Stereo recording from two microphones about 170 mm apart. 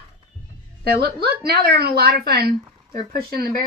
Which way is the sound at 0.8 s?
70° right (ahead or behind).